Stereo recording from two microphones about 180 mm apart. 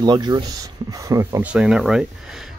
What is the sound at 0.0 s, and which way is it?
Speech, 25° right (ahead or behind).